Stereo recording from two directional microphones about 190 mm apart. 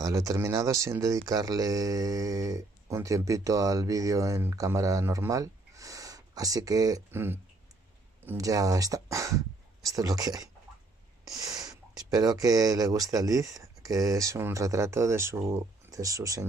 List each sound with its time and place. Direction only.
0.0 s speech: 20° right (ahead or behind)
11.4 s a sound: 20° right (ahead or behind)
11.9 s speech: 20° right (ahead or behind)